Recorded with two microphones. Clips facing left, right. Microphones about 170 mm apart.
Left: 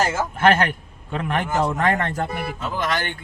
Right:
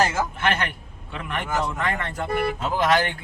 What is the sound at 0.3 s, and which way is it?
A man's voice, 50° left (ahead or behind).